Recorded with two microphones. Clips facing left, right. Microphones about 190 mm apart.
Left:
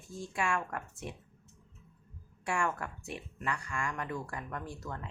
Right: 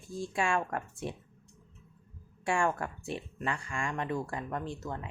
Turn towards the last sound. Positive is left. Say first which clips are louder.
# right 4 dB
turn(degrees=-20)  # may be behind; listen again after turning